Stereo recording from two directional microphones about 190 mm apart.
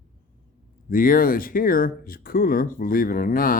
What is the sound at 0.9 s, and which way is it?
Speech, 50° left (ahead or behind).